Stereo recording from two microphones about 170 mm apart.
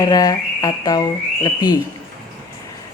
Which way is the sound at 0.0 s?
20° left (ahead or behind).